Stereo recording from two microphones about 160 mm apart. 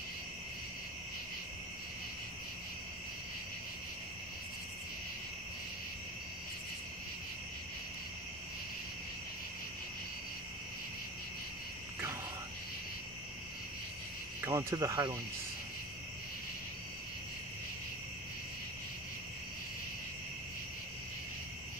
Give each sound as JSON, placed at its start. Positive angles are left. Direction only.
{"t": 14.4, "sound": "speech", "side_deg": -20}